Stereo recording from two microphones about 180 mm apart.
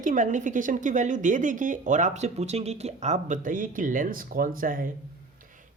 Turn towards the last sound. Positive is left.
turn(degrees=-45)  # may be behind; listen again after turning